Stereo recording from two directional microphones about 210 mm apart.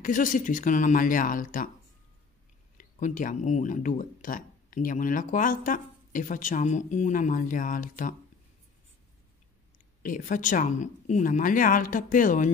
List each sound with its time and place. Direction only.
0.0 s speech: 40° left (ahead or behind)
2.8 s speech: 40° left (ahead or behind)
10.0 s speech: 40° left (ahead or behind)